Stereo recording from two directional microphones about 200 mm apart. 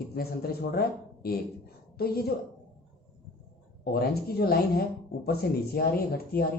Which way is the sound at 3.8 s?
50° left (ahead or behind).